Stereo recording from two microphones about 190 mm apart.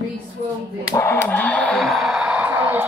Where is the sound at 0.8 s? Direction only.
15° left (ahead or behind).